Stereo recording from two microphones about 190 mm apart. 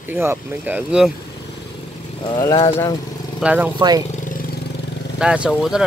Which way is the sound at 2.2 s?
20° left (ahead or behind).